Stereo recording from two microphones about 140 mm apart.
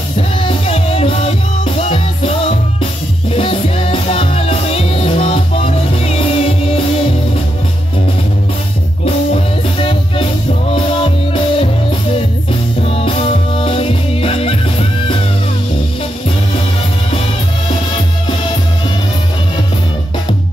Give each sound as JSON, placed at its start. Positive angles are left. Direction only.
{"t": 0.4, "sound": "music", "side_deg": 40}
{"t": 9.0, "sound": "music", "side_deg": 40}
{"t": 12.8, "sound": "music", "side_deg": 45}